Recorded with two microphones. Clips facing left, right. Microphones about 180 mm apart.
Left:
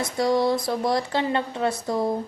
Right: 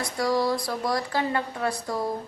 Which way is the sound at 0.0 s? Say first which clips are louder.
Left 3 dB; 25° left (ahead or behind).